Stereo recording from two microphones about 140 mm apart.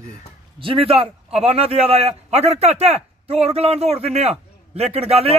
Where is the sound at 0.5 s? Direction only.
40° right (ahead or behind).